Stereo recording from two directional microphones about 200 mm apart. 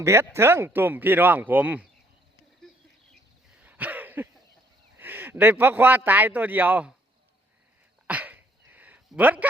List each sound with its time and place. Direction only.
0.0 s a man's voice: 15° right (ahead or behind)
3.6 s throat clearing: 10° right (ahead or behind)
4.9 s a man's voice: 10° right (ahead or behind)
8.0 s sneeze: 10° right (ahead or behind)